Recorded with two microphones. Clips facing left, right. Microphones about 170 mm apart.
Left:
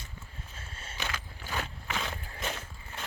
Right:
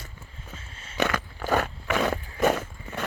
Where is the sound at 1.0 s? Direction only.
70° right (ahead or behind).